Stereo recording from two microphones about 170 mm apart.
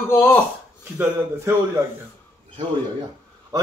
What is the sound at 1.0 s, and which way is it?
Speech, 15° right (ahead or behind).